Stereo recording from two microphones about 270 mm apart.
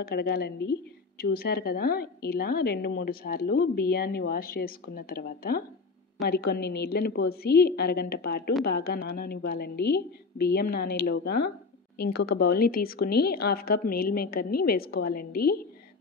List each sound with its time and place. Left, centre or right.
0.0 s a woman's voice: left